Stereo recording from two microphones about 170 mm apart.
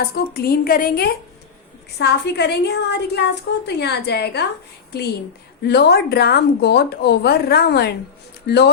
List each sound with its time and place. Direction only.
0.1 s a woman's voice: 65° left (ahead or behind)
2.0 s a woman's voice: 75° left (ahead or behind)
5.6 s a woman's voice: 70° left (ahead or behind)